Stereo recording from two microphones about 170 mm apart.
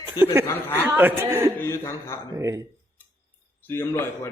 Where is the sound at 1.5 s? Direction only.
15° left (ahead or behind).